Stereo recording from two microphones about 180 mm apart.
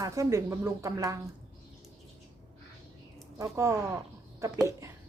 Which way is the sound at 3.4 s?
15° right (ahead or behind).